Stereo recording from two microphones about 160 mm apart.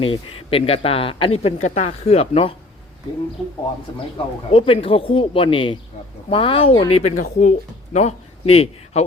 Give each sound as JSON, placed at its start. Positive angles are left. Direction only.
{"t": 0.0, "sound": "speech", "side_deg": 35}
{"t": 4.5, "sound": "a man's voice", "side_deg": 35}